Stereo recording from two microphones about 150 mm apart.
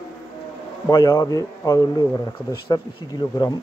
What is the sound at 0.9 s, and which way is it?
A man's voice, 20° left (ahead or behind).